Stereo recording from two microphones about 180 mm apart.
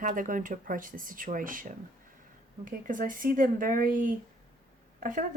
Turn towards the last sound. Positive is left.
turn(degrees=-45)  # may be behind; listen again after turning